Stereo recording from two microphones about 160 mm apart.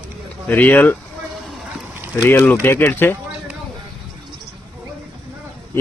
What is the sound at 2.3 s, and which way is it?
Speech, 10° left (ahead or behind).